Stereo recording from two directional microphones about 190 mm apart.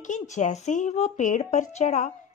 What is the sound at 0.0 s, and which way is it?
Speech, 40° left (ahead or behind).